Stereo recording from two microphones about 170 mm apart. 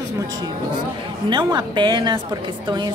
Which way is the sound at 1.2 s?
25° right (ahead or behind).